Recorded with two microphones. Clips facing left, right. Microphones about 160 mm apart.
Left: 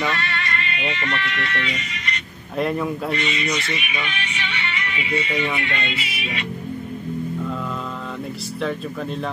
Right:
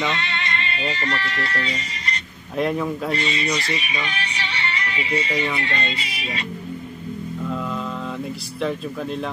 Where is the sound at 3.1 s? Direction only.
35° right (ahead or behind).